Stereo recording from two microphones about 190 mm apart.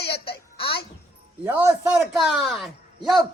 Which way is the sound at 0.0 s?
30° left (ahead or behind).